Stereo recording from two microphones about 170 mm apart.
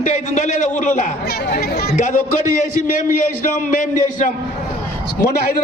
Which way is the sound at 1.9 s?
45° left (ahead or behind).